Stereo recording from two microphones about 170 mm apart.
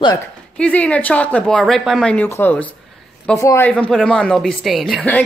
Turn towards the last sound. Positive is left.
turn(degrees=5)  # may be behind; listen again after turning